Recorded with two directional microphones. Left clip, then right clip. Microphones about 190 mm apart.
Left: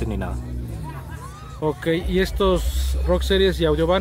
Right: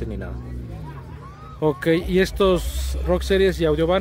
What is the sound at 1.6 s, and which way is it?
Speech, 35° right (ahead or behind).